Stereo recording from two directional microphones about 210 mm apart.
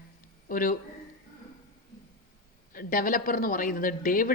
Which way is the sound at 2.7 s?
40° left (ahead or behind).